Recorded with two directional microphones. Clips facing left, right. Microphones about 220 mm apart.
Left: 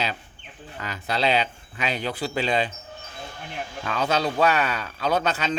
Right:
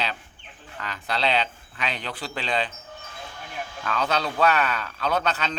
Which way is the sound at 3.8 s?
20° left (ahead or behind).